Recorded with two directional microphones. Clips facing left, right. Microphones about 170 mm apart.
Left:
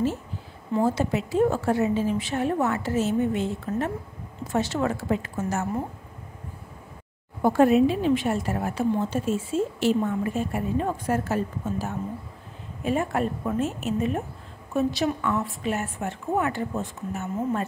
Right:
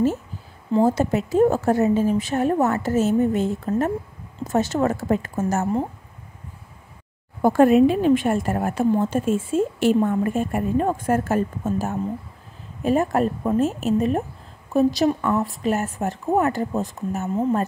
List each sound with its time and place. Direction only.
0.7 s a woman's voice: 45° right (ahead or behind)
7.4 s a woman's voice: 50° right (ahead or behind)